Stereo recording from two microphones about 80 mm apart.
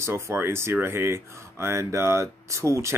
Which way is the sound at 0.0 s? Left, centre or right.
Right.